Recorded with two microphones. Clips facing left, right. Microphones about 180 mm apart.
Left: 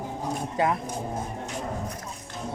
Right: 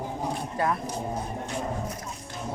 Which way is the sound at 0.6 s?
20° left (ahead or behind).